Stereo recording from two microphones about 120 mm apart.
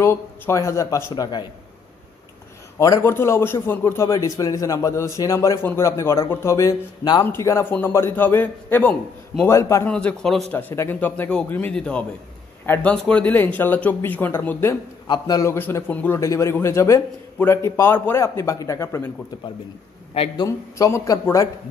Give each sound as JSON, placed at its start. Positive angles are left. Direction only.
{"t": 0.0, "sound": "a man's voice", "side_deg": 20}
{"t": 2.8, "sound": "a man's voice", "side_deg": 25}
{"t": 9.8, "sound": "speech", "side_deg": 10}
{"t": 10.5, "sound": "speech", "side_deg": 20}
{"t": 15.0, "sound": "a man's voice", "side_deg": 35}
{"t": 15.5, "sound": "a man's voice", "side_deg": 15}
{"t": 20.4, "sound": "a man's voice", "side_deg": 25}